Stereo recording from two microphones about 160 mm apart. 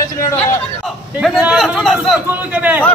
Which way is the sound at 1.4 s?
5° right (ahead or behind).